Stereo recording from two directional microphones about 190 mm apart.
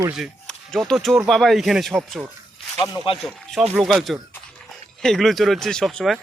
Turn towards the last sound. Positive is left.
turn(degrees=0)  # may be behind; listen again after turning